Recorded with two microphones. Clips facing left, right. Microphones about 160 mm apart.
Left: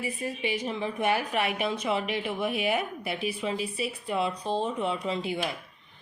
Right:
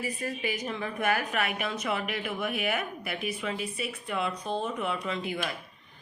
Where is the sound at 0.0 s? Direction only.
20° left (ahead or behind).